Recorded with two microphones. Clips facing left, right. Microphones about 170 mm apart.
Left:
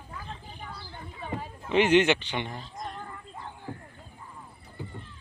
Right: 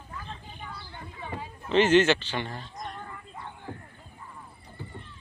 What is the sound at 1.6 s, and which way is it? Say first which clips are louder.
A man's voice: right 1 dB; 15° left (ahead or behind).